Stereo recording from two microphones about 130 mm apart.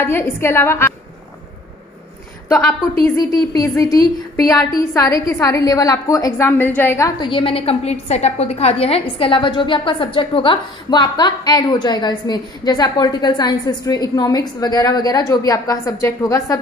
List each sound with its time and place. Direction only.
0.0 s a woman's voice: 20° left (ahead or behind)
2.4 s a woman's voice: 20° left (ahead or behind)
7.2 s a woman's voice: 40° left (ahead or behind); by 16.5 s 25° left (ahead or behind)